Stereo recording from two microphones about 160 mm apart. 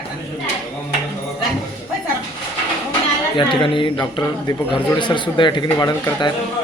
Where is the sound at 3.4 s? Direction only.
30° left (ahead or behind).